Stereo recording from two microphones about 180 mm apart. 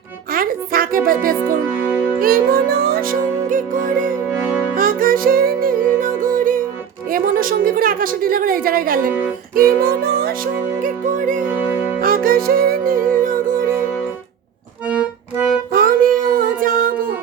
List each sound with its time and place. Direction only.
0.3 s music: 55° right (ahead or behind)
1.0 s speech: 55° right (ahead or behind)
2.1 s music: 55° right (ahead or behind)
7.1 s a sound: 50° right (ahead or behind)
9.6 s music: 55° right (ahead or behind)
15.7 s child singing: 55° right (ahead or behind)
16.8 s music: 55° right (ahead or behind)